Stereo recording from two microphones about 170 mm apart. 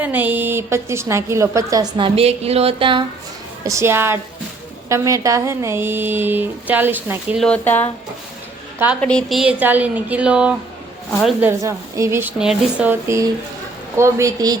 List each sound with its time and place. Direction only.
0.0 s a woman's voice: 10° right (ahead or behind); by 3.0 s 30° right (ahead or behind)
3.6 s a woman's voice: 20° right (ahead or behind)
7.3 s speech: 5° left (ahead or behind)
9.0 s a woman's voice: 5° left (ahead or behind)
11.3 s a woman's voice: 15° right (ahead or behind)